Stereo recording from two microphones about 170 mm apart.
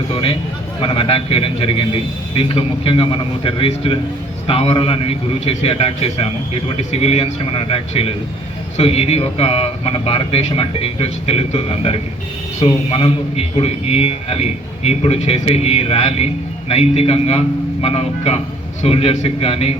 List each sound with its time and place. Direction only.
0.1 s a man's voice: 30° left (ahead or behind)